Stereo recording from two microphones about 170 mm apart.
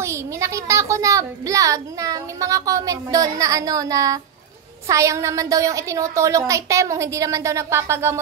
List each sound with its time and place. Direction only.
0.0 s a child's voice: 15° right (ahead or behind)